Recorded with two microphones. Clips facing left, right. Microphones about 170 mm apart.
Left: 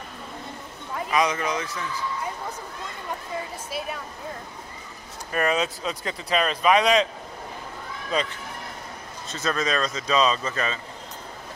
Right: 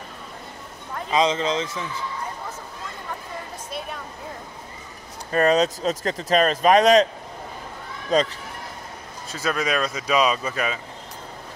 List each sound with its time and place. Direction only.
1.1 s a man's voice: 25° right (ahead or behind)
5.3 s speech: 35° right (ahead or behind)
8.1 s speech: 40° right (ahead or behind)
9.3 s speech: 10° right (ahead or behind)